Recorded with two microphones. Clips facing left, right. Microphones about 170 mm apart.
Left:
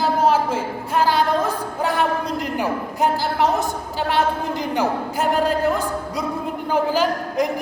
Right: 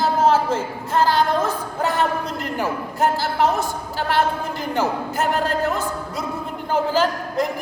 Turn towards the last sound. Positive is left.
turn(degrees=10)  # may be behind; listen again after turning